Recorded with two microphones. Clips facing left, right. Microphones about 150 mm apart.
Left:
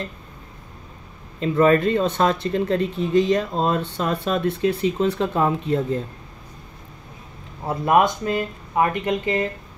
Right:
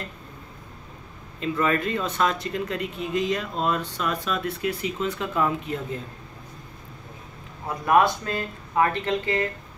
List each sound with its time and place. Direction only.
1.4 s speech: 35° left (ahead or behind)
7.6 s speech: 25° left (ahead or behind)